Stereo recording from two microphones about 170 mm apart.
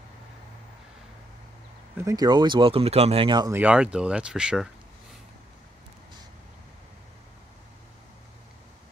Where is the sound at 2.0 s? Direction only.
25° right (ahead or behind).